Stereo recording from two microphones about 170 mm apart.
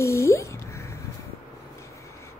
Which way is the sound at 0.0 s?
15° left (ahead or behind).